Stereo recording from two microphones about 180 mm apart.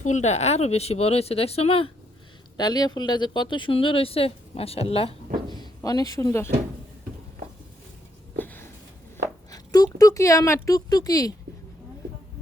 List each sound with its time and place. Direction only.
0.0 s speech: 40° left (ahead or behind)
2.6 s speech: 20° left (ahead or behind)
5.5 s speech: 20° left (ahead or behind)
8.4 s a sound: 10° left (ahead or behind)
9.5 s speech: 20° left (ahead or behind)